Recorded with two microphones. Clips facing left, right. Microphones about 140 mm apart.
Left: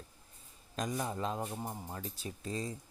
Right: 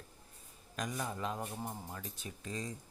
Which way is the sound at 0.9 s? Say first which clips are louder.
Left 2 dB; 25° left (ahead or behind).